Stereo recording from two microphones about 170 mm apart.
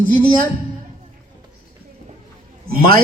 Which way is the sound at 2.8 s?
60° right (ahead or behind).